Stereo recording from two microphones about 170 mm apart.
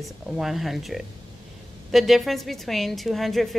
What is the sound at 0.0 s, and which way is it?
A woman's voice, centre (ahead or behind).